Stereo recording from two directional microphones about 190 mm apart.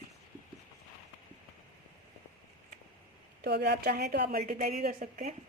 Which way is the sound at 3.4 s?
60° right (ahead or behind).